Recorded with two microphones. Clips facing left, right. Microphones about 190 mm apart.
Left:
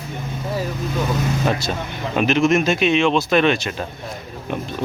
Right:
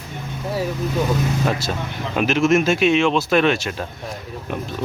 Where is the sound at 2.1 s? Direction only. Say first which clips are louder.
Even; 5° right (ahead or behind).